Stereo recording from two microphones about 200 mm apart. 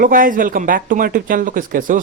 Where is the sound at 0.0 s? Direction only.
45° right (ahead or behind).